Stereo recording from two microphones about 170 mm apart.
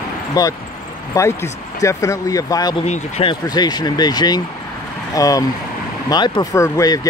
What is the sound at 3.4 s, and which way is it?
Speech, 25° left (ahead or behind).